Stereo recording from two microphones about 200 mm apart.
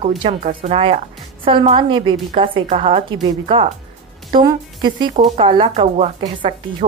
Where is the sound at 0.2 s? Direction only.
30° right (ahead or behind).